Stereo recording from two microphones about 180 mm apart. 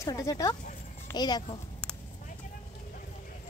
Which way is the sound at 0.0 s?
20° left (ahead or behind).